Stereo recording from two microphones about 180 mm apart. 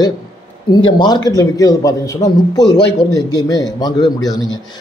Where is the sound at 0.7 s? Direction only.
25° left (ahead or behind).